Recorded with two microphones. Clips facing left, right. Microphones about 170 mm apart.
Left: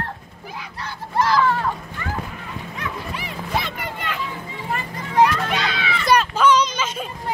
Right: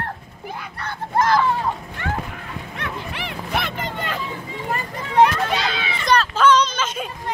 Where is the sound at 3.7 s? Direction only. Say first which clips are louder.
Right 2 dB; 30° right (ahead or behind).